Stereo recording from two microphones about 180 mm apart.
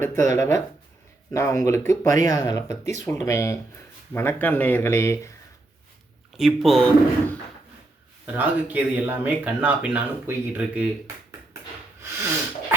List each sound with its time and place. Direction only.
0.3 s speech: 15° left (ahead or behind)
6.3 s speech: centre (ahead or behind)
8.3 s speech: 10° right (ahead or behind)